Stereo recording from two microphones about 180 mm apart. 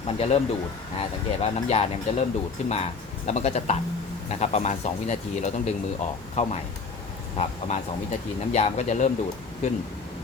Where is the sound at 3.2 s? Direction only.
40° left (ahead or behind).